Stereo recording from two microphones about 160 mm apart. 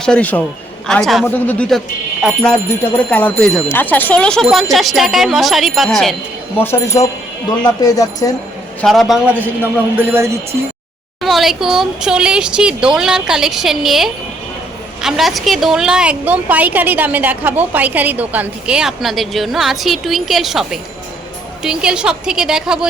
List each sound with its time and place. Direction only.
0.0 s a woman's voice: 5° left (ahead or behind)
6.6 s speech: 15° left (ahead or behind)
8.8 s a woman's voice: centre (ahead or behind)
10.0 s speech: 15° right (ahead or behind)
11.2 s a woman's voice: centre (ahead or behind)